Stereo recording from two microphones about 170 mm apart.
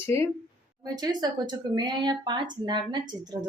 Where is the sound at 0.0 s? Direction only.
15° left (ahead or behind).